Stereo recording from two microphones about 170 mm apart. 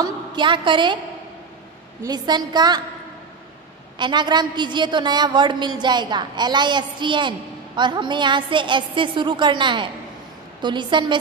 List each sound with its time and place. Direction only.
0.0 s a woman's voice: 30° right (ahead or behind)
2.0 s a woman's voice: 25° right (ahead or behind)
4.0 s a woman's voice: 25° right (ahead or behind)